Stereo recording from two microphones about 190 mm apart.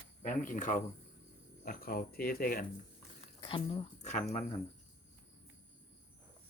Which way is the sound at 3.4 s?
25° left (ahead or behind).